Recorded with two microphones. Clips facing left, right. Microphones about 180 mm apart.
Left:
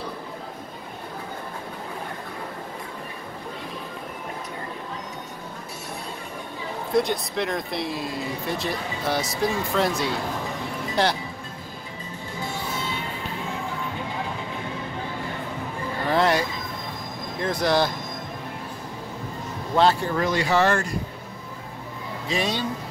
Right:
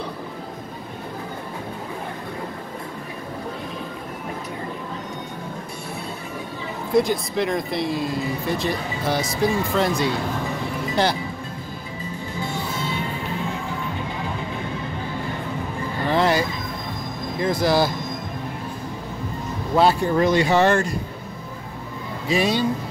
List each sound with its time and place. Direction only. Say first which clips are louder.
6.9 s speech: right 3 dB; centre (ahead or behind)
16.1 s chicken: right 1 dB; centre (ahead or behind)
17.4 s speech: right 3 dB; 5° right (ahead or behind)
19.7 s a sound: right 2 dB; 10° right (ahead or behind)
20.2 s speech: right 4 dB; 20° right (ahead or behind)
22.3 s speech: right 6 dB; 10° right (ahead or behind)